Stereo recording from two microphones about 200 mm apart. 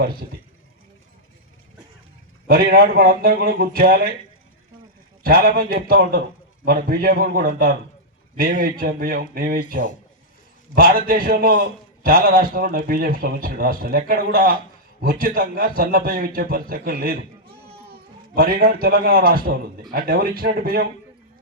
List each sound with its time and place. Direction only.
2.5 s speech: 50° right (ahead or behind)
5.2 s speech: 45° right (ahead or behind)
18.3 s speech: 45° right (ahead or behind)